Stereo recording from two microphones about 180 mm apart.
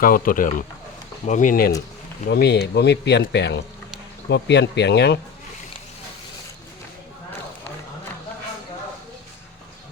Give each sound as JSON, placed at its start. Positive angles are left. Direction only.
{"t": 0.0, "sound": "speech", "side_deg": 50}
{"t": 2.2, "sound": "speech", "side_deg": 65}